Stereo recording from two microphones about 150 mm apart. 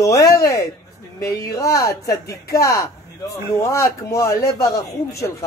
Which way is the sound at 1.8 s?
20° left (ahead or behind).